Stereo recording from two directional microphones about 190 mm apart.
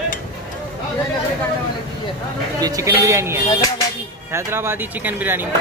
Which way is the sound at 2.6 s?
15° right (ahead or behind).